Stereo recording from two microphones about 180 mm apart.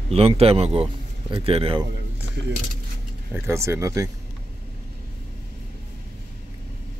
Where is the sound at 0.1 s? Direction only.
35° right (ahead or behind).